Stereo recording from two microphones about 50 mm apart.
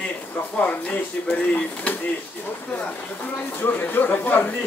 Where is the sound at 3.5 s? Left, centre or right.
Left.